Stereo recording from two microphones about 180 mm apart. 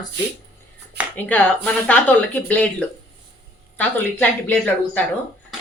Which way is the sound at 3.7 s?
10° left (ahead or behind).